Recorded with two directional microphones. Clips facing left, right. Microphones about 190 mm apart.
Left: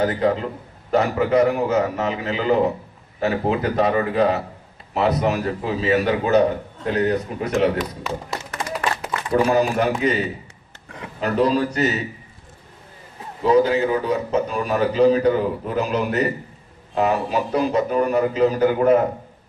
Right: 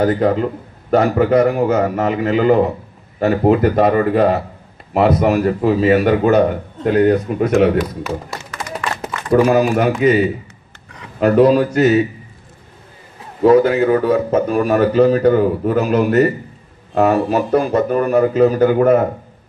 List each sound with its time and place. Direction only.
0.0 s speech: 50° right (ahead or behind)
9.3 s speech: 50° right (ahead or behind)
13.4 s speech: 50° right (ahead or behind)